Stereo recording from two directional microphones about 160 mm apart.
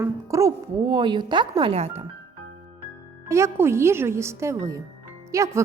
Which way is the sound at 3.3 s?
15° right (ahead or behind).